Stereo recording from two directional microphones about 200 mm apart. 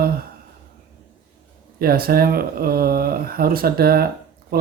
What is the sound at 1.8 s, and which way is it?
Speech, 50° right (ahead or behind).